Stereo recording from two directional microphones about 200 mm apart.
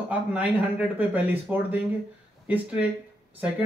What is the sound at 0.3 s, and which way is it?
A man's voice, 5° right (ahead or behind).